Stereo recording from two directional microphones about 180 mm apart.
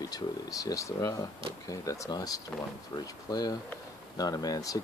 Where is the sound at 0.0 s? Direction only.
20° left (ahead or behind).